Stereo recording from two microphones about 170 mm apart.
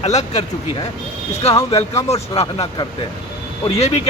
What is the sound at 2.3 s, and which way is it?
Speech, 35° left (ahead or behind).